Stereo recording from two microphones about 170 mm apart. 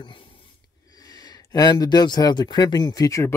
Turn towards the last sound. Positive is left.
turn(degrees=20)  # may be behind; listen again after turning